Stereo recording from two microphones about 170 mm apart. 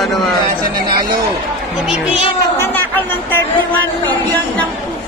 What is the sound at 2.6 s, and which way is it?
Speech, 10° left (ahead or behind).